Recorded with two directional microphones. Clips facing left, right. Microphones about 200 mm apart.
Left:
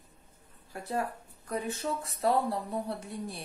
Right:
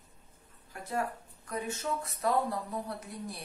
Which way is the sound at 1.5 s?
30° left (ahead or behind).